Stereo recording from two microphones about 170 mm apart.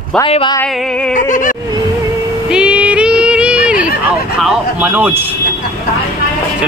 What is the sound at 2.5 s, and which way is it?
Female singing, 5° right (ahead or behind).